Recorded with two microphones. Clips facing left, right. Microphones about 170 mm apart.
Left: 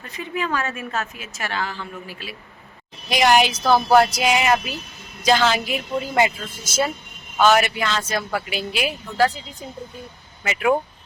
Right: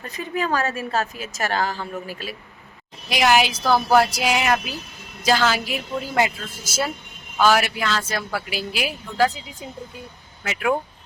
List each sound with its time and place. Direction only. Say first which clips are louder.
0.0 s a woman's voice: right 1 dB; 40° right (ahead or behind)
3.1 s a woman's voice: left 1 dB; centre (ahead or behind)
3.9 s speech: left 2 dB; 5° right (ahead or behind)
7.4 s speech: left 2 dB; 5° right (ahead or behind)
10.4 s speech: left 3 dB; centre (ahead or behind)